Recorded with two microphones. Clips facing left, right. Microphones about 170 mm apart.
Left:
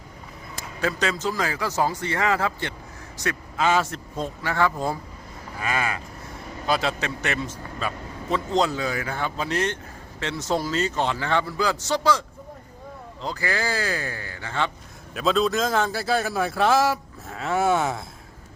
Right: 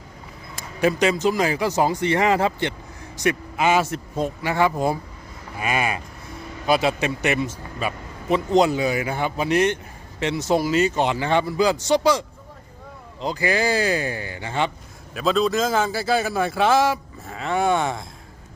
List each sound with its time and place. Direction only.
0.5 s a man's voice: 15° right (ahead or behind)
13.2 s a man's voice: 20° right (ahead or behind)
15.1 s a man's voice: centre (ahead or behind)